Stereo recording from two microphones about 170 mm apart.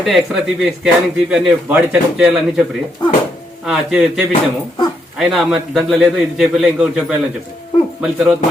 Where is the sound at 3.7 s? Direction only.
5° right (ahead or behind).